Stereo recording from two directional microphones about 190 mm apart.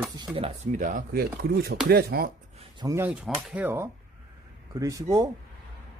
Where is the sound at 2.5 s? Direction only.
20° right (ahead or behind).